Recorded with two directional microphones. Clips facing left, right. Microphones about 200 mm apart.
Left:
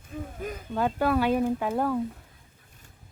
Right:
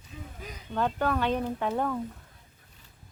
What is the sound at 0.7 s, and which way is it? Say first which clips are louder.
A woman's voice: left 3 dB; 5° left (ahead or behind).